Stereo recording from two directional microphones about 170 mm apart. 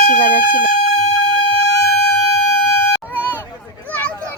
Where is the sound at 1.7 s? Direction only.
Centre (ahead or behind).